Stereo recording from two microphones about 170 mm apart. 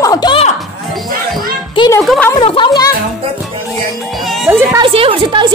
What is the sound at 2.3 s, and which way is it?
Speech, 30° left (ahead or behind).